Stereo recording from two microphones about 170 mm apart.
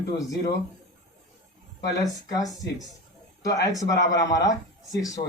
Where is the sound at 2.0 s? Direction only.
20° left (ahead or behind).